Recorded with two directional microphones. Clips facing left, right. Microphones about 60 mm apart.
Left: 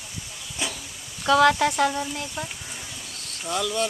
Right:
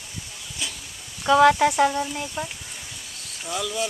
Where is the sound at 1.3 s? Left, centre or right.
Centre.